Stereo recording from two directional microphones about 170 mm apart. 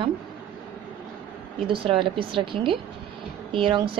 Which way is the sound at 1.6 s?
30° right (ahead or behind).